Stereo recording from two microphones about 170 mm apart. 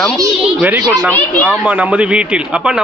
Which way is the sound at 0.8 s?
20° right (ahead or behind).